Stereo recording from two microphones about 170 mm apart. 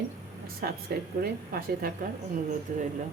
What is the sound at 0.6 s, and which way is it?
Speech, 55° right (ahead or behind).